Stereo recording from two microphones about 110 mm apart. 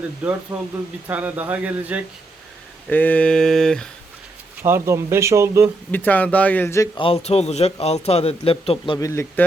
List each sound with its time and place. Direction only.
0.5 s speech: 15° right (ahead or behind)
2.9 s a sound: 15° left (ahead or behind)
4.6 s speech: 25° right (ahead or behind)
5.9 s a sound: 15° left (ahead or behind)
6.9 s a man's voice: 55° left (ahead or behind)
9.0 s speech: 30° left (ahead or behind)